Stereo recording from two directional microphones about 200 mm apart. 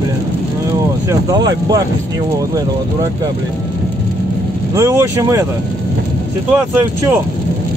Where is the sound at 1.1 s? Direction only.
20° right (ahead or behind).